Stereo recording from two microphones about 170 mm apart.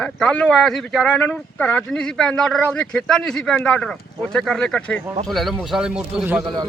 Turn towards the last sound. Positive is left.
turn(degrees=0)  # may be behind; listen again after turning